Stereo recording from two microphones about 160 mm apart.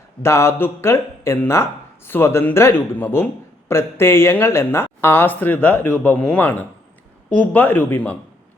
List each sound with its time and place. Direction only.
0.2 s speech: 15° left (ahead or behind)